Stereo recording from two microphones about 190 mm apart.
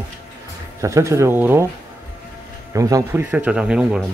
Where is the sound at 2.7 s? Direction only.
15° right (ahead or behind).